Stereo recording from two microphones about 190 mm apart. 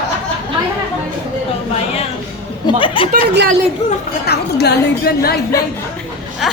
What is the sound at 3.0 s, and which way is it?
Speech, 25° left (ahead or behind).